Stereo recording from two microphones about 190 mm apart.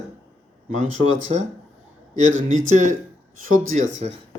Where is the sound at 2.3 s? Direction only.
90° right.